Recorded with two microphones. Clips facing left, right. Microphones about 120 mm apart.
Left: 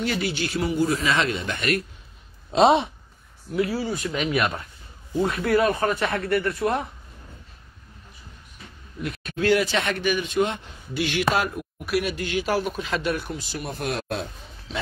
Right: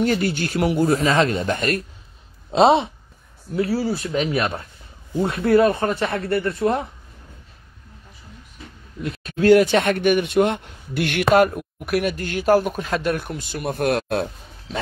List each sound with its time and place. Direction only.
0.0 s speech: 45° right (ahead or behind)
2.5 s speech: 30° right (ahead or behind)
9.0 s a sound: 30° right (ahead or behind)
9.4 s speech: 45° right (ahead or behind)